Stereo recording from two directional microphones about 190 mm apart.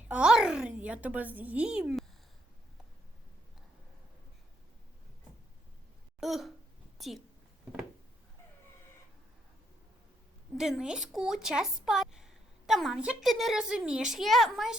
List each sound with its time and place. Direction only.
0.1 s speech: 5° right (ahead or behind)
6.1 s a sound: centre (ahead or behind)
10.6 s speech: 5° right (ahead or behind)